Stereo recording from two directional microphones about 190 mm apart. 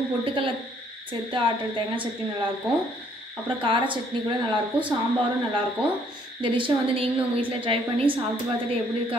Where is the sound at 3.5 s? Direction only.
25° right (ahead or behind).